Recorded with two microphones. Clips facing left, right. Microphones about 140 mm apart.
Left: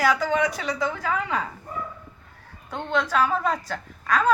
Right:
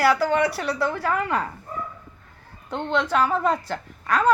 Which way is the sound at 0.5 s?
65° right (ahead or behind).